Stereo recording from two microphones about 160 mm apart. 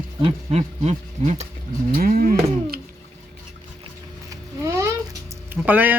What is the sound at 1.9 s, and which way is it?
Cattle, 65° right (ahead or behind).